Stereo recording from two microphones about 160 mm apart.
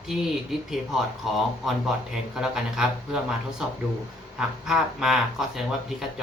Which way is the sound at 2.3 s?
5° right (ahead or behind).